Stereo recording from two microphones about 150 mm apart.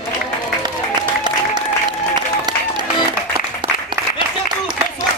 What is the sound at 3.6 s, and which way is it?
Applause, 30° right (ahead or behind).